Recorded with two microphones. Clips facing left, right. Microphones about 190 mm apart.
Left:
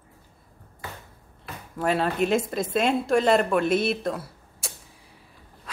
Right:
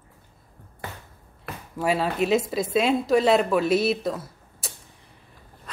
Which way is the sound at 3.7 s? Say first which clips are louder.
Right 2 dB; 50° left (ahead or behind).